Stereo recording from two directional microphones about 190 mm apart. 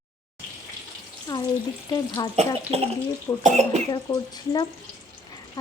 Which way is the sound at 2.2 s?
20° left (ahead or behind).